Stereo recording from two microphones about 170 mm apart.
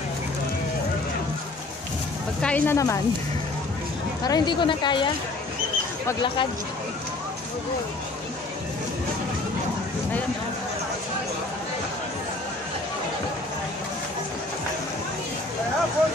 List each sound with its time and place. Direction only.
2.4 s speech: 10° left (ahead or behind)
4.2 s speech: 25° left (ahead or behind)